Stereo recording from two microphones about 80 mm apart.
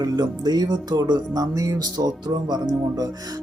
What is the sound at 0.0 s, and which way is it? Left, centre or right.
Speech, right.